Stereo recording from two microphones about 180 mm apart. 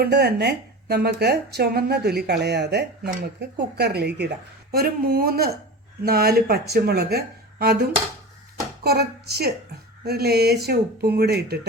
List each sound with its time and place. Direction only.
0.0 s a woman's voice: 65° right (ahead or behind)